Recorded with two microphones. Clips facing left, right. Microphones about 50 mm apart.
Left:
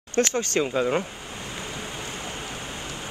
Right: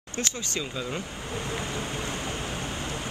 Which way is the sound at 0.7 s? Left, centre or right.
Left.